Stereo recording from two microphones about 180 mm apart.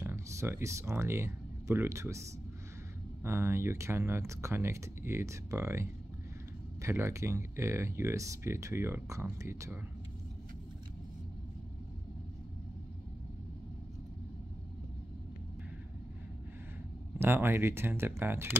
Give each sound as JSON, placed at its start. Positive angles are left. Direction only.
{"t": 0.0, "sound": "speech", "side_deg": -15}
{"t": 3.3, "sound": "speech", "side_deg": -15}
{"t": 17.2, "sound": "speech", "side_deg": -10}